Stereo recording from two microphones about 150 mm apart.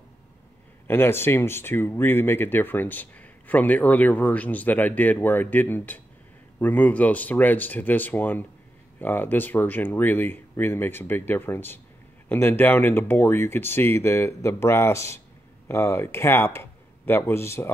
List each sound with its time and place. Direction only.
0.8 s speech: 15° left (ahead or behind)